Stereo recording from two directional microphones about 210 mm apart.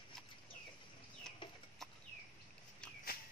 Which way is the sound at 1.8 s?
Centre (ahead or behind).